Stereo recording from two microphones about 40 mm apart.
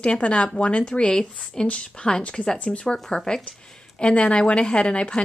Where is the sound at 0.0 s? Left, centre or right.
Left.